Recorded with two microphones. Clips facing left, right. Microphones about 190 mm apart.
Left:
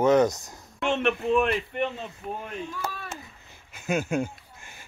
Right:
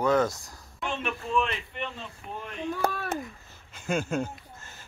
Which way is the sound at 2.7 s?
60° right (ahead or behind).